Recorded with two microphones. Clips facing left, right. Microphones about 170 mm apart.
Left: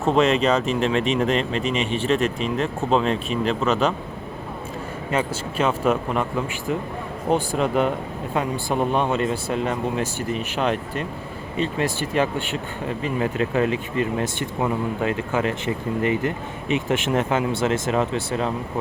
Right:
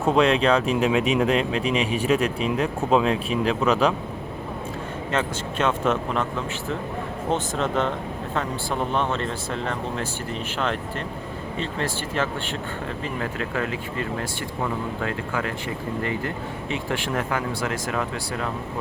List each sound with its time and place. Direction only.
0.0 s speech: centre (ahead or behind)
5.1 s speech: 10° left (ahead or behind)